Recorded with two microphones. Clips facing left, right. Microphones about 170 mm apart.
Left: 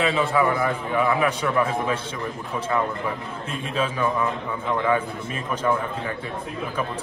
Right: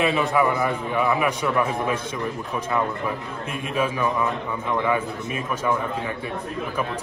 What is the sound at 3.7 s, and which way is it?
A man's voice, 10° right (ahead or behind).